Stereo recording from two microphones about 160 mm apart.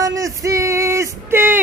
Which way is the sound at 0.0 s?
20° right (ahead or behind).